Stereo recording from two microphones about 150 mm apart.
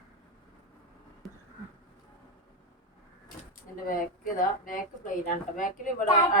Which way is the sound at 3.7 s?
65° left (ahead or behind).